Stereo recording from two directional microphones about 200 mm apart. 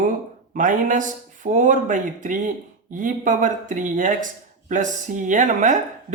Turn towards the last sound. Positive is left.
turn(degrees=-40)  # may be behind; listen again after turning